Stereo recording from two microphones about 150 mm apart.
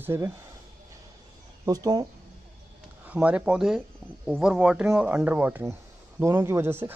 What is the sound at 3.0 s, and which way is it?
Speech, 10° right (ahead or behind).